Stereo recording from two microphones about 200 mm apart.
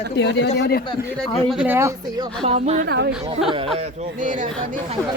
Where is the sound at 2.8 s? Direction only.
55° right (ahead or behind).